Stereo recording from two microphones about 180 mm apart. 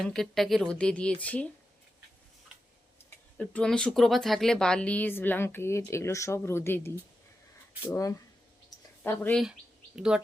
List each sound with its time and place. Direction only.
0.0 s speech: centre (ahead or behind)
3.3 s speech: 5° left (ahead or behind)
9.4 s speech: 5° right (ahead or behind)